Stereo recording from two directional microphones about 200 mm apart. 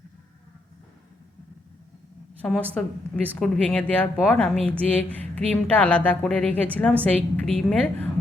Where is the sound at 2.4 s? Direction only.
5° left (ahead or behind).